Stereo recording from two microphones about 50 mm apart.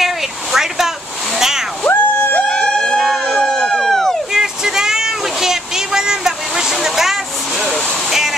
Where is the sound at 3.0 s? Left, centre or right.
Centre.